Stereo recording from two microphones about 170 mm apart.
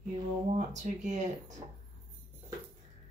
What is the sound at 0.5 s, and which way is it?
Speech, 45° right (ahead or behind).